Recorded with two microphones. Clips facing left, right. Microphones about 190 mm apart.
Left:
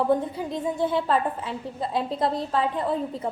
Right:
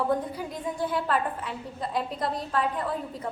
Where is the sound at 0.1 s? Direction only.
25° left (ahead or behind).